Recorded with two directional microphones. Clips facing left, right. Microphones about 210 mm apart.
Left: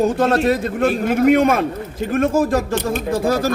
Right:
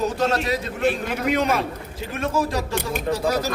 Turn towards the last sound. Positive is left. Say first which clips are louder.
# left 4 dB
turn(degrees=50)  # may be behind; listen again after turning